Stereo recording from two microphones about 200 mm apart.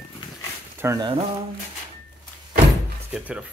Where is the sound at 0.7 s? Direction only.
15° right (ahead or behind).